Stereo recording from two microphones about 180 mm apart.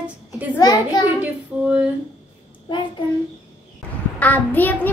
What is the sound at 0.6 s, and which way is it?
Speech, 20° left (ahead or behind).